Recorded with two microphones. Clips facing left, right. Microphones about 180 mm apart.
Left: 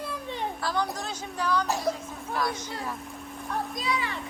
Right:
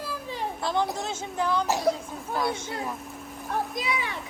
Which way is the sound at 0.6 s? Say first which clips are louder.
Right 5 dB; 25° right (ahead or behind).